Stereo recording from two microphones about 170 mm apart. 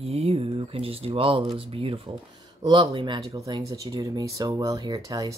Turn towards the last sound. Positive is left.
turn(degrees=-20)  # may be behind; listen again after turning